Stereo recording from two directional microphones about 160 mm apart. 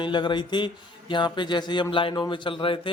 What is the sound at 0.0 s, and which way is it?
A man's voice, 30° left (ahead or behind).